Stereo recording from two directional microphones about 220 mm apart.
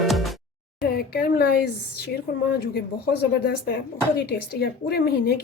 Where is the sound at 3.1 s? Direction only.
45° left (ahead or behind).